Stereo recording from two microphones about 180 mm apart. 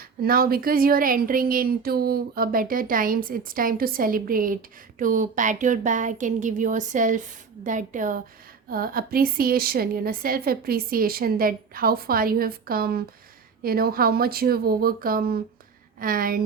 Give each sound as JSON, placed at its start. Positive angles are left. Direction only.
{"t": 0.0, "sound": "a woman's voice", "side_deg": -55}